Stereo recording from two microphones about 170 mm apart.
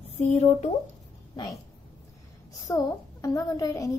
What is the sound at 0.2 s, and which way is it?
Speech, 40° left (ahead or behind).